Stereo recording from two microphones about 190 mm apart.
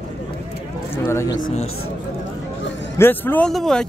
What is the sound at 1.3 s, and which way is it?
Speech, 90° left.